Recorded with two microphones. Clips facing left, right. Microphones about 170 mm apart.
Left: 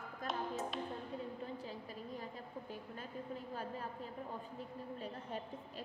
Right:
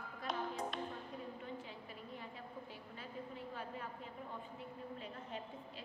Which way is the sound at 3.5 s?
40° left (ahead or behind).